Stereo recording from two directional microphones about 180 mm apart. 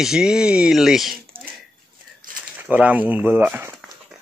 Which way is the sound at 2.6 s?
10° right (ahead or behind).